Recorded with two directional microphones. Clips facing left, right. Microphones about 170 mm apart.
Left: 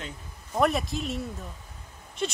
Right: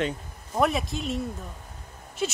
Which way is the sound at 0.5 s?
Centre (ahead or behind).